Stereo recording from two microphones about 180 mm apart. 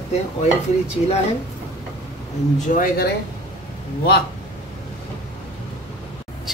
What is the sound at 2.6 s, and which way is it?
Speech, 45° left (ahead or behind).